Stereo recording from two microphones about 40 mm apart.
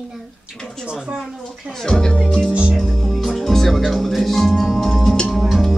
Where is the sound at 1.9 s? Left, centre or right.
Centre.